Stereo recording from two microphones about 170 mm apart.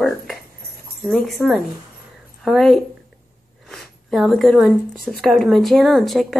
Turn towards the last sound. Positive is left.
turn(degrees=0)  # may be behind; listen again after turning